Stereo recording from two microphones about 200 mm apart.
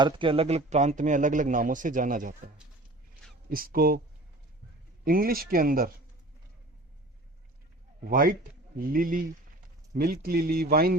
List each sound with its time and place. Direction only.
0.0 s speech: 25° right (ahead or behind); by 2.3 s 40° right (ahead or behind)
3.5 s speech: 45° right (ahead or behind)
5.0 s speech: 45° right (ahead or behind)
8.1 s speech: 45° right (ahead or behind)